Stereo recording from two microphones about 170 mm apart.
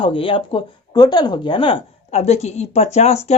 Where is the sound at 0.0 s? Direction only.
30° left (ahead or behind).